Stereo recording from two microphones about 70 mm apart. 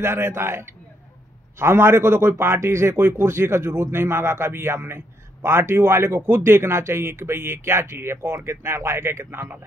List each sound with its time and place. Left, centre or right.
0.0 s a man's voice: right